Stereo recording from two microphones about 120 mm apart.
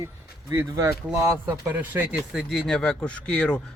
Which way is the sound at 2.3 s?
Centre (ahead or behind).